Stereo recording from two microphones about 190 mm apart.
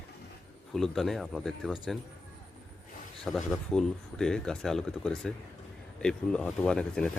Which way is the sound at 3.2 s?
Centre (ahead or behind).